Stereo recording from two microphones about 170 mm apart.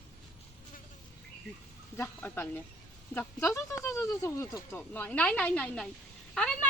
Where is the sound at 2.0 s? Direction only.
10° left (ahead or behind).